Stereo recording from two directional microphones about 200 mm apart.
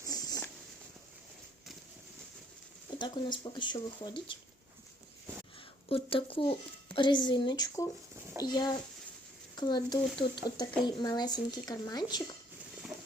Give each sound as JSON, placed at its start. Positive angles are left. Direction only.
{"t": 0.1, "sound": "a sound", "side_deg": 20}
{"t": 3.0, "sound": "speech", "side_deg": 20}
{"t": 5.9, "sound": "speech", "side_deg": 25}